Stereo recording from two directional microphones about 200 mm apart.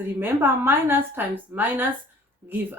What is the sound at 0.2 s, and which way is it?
Speech, 10° right (ahead or behind).